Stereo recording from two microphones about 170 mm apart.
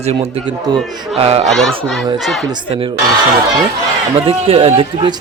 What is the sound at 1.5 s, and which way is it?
Speech, centre (ahead or behind).